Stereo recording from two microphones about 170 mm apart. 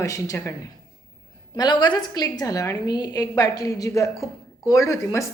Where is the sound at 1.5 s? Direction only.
25° left (ahead or behind).